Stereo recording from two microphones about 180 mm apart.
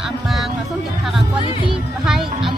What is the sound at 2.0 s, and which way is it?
Speech, centre (ahead or behind).